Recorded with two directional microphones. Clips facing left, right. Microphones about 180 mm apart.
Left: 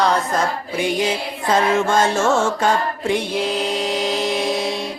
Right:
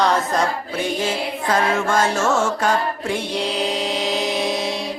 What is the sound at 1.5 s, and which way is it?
Music, 25° left (ahead or behind).